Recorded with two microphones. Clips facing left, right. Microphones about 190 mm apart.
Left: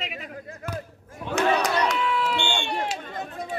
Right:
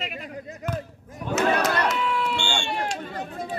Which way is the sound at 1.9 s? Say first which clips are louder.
Left 1 dB; centre (ahead or behind).